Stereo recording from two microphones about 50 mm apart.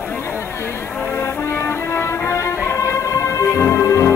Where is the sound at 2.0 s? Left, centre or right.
Left.